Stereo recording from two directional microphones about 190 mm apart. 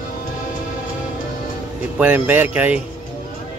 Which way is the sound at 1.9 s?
10° right (ahead or behind).